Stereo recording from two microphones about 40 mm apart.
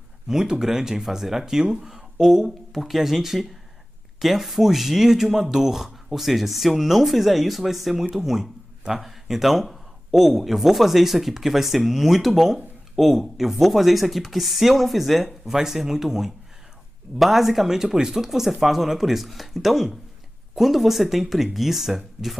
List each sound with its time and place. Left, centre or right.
0.3 s speech: centre